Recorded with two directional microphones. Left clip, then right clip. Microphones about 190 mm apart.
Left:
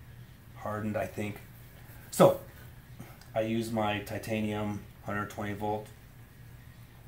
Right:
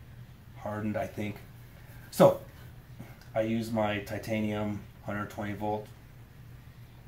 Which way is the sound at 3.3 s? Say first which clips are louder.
Right 1 dB; 20° left (ahead or behind).